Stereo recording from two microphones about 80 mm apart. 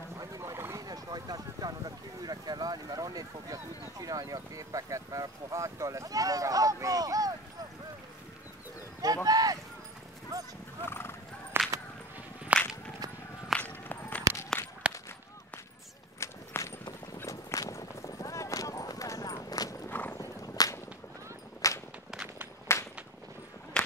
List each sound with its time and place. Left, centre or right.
0.4 s a sound: right
0.7 s speech: right
9.0 s a sound: right
10.3 s horse: right
10.8 s horse: left
11.6 s whip: right
12.5 s whip: centre
13.6 s run: centre
14.6 s walk: left
16.2 s a sound: left
17.3 s clip-clop: left
19.9 s clip-clop: left
20.2 s whip: left
21.6 s walk: left